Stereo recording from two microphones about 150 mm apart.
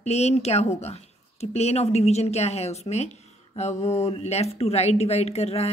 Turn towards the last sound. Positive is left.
turn(degrees=45)  # may be behind; listen again after turning